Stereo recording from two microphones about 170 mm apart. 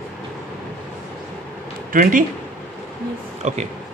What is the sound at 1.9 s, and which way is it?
Speech, 55° right (ahead or behind).